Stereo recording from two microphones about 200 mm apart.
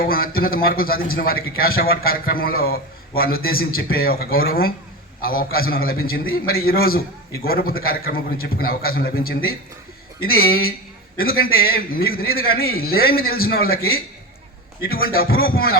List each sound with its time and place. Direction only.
0.0 s a man's voice: 45° left (ahead or behind)
14.8 s a man's voice: 50° left (ahead or behind)